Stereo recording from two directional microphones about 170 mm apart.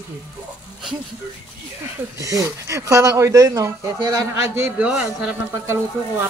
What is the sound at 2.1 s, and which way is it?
Speech, 20° right (ahead or behind).